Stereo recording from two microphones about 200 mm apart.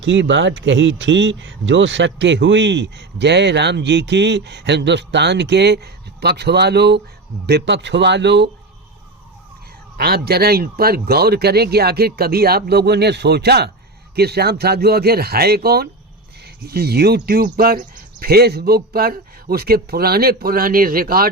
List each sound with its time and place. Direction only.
0.0 s speech: 65° right (ahead or behind)
10.0 s speech: 50° right (ahead or behind)